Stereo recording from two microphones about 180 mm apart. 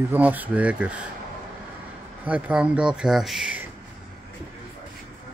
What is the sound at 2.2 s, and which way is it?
Speech, 5° right (ahead or behind).